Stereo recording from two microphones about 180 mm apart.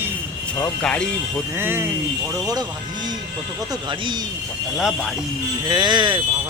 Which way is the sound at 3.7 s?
25° right (ahead or behind).